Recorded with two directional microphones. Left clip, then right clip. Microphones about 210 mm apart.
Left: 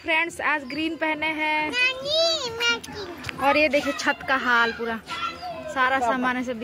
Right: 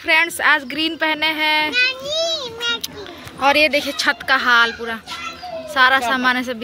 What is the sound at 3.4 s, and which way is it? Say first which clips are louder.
A woman's voice: right 5 dB; centre (ahead or behind).